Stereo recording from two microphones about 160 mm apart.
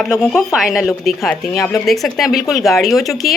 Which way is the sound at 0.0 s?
Centre (ahead or behind).